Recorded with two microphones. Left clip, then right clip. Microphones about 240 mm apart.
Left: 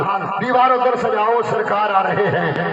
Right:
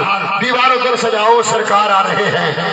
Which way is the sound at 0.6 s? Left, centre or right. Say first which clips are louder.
Right 1 dB; right.